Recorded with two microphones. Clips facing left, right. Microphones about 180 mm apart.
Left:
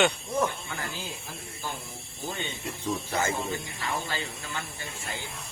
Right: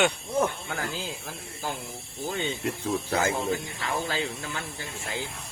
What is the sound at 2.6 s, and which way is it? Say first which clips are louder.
Speech: right 2 dB; 75° right (ahead or behind).